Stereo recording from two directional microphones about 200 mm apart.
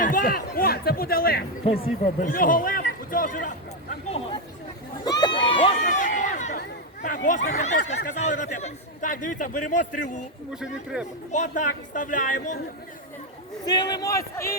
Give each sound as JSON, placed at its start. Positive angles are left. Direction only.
{"t": 0.0, "sound": "speech", "side_deg": 45}
{"t": 1.6, "sound": "a man's voice", "side_deg": 30}
{"t": 2.2, "sound": "a man's voice", "side_deg": 45}
{"t": 5.0, "sound": "run", "side_deg": 20}
{"t": 5.8, "sound": "chatter", "side_deg": 40}
{"t": 6.6, "sound": "speech", "side_deg": 40}
{"t": 10.5, "sound": "speech", "side_deg": -5}
{"t": 11.3, "sound": "speech", "side_deg": 40}
{"t": 13.7, "sound": "a man's voice", "side_deg": 20}